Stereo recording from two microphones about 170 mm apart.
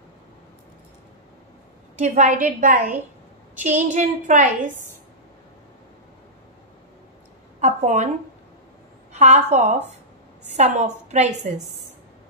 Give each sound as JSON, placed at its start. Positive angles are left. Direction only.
{"t": 2.0, "sound": "a woman's voice", "side_deg": -45}
{"t": 7.6, "sound": "speech", "side_deg": -45}
{"t": 9.1, "sound": "a woman's voice", "side_deg": -40}